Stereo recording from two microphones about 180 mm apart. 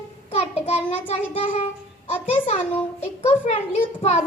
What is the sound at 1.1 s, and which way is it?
A child's voice, 35° left (ahead or behind).